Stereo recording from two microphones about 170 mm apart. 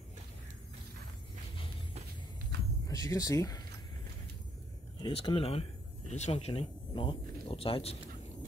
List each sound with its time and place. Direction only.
2.9 s speech: 20° left (ahead or behind)
5.0 s speech: 30° left (ahead or behind)